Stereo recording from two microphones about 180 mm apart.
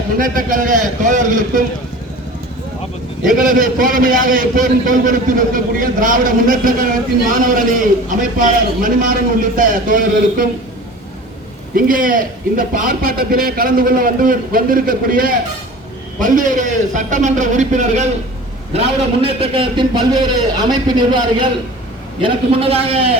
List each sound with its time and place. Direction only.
0.2 s a man's voice: 50° right (ahead or behind)
3.3 s a man's voice: 50° right (ahead or behind)
11.7 s a man's voice: 50° right (ahead or behind); by 23.1 s 30° right (ahead or behind)